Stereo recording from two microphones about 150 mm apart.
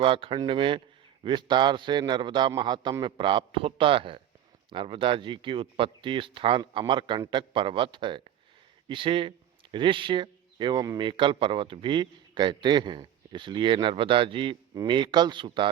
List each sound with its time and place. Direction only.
0.0 s a man's voice: 35° right (ahead or behind)